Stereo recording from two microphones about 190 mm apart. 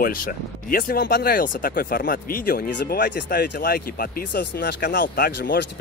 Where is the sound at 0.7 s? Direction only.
50° left (ahead or behind).